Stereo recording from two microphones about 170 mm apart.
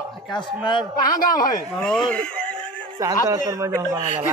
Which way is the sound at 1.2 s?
55° left (ahead or behind).